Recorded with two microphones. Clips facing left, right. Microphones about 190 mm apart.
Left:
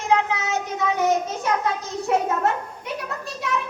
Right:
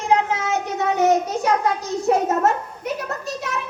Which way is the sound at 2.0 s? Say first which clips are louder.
Right 3 dB; 40° right (ahead or behind).